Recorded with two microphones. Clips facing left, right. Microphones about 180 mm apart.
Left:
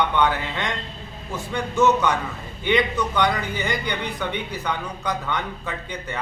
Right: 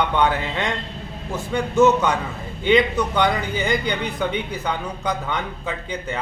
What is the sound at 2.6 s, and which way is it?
A man's voice, 25° right (ahead or behind).